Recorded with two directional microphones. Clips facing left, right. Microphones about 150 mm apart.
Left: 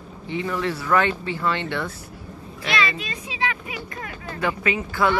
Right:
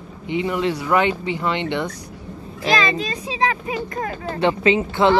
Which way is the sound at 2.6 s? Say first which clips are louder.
Right 5 dB; 35° right (ahead or behind).